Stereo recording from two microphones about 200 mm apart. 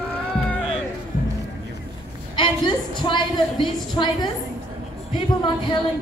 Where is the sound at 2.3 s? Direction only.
25° left (ahead or behind).